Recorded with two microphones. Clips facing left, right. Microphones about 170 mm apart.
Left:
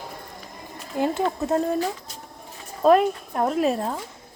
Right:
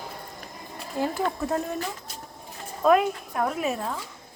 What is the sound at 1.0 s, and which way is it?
Speech, 20° left (ahead or behind).